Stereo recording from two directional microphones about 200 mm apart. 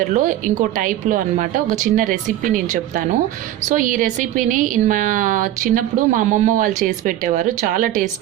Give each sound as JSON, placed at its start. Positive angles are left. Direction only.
{"t": 0.1, "sound": "a woman's voice", "side_deg": -40}